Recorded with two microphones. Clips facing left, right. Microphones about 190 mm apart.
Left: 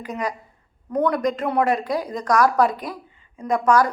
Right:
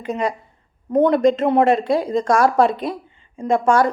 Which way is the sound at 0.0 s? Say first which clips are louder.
Right 5 dB; 25° right (ahead or behind).